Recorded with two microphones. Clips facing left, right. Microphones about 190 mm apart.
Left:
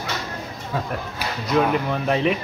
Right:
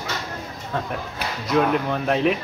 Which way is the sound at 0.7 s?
5° left (ahead or behind).